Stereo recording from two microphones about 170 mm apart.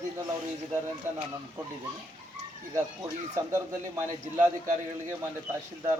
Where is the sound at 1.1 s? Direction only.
15° right (ahead or behind).